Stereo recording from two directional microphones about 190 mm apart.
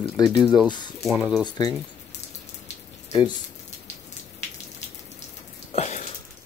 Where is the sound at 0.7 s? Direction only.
25° left (ahead or behind).